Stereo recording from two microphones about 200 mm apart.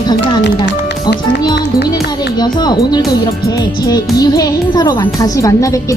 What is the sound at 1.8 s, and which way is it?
Music, 20° left (ahead or behind).